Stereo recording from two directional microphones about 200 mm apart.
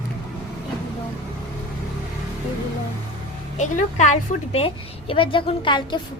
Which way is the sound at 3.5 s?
40° left (ahead or behind).